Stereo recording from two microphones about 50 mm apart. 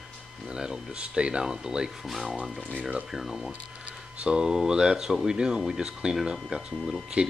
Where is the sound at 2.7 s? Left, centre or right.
Right.